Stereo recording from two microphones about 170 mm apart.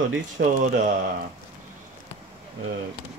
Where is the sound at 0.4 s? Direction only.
75° right (ahead or behind).